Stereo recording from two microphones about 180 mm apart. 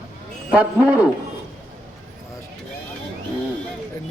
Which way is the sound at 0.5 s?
10° right (ahead or behind).